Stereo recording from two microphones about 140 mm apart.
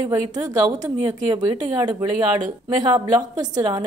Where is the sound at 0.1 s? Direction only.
25° right (ahead or behind).